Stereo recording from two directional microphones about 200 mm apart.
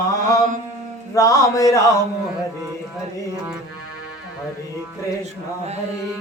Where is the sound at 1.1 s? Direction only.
15° left (ahead or behind).